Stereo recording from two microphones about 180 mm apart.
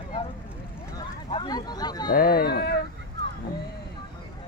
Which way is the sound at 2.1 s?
55° left (ahead or behind).